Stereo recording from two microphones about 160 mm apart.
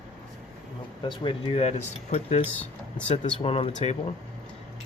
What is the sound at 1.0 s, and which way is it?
Speech, 30° left (ahead or behind).